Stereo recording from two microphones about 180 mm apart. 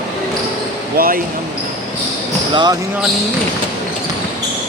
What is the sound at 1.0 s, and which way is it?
Speech, 55° right (ahead or behind).